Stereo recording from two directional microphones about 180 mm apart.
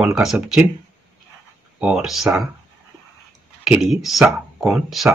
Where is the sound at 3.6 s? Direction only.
5° right (ahead or behind).